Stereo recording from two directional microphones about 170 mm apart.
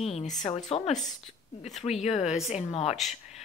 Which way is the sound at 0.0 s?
40° left (ahead or behind).